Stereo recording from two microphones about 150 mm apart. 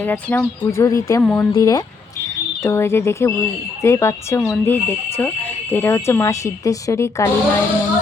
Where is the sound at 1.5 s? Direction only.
25° left (ahead or behind).